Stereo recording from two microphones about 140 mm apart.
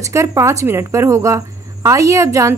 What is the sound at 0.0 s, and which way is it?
A woman's voice, 20° right (ahead or behind).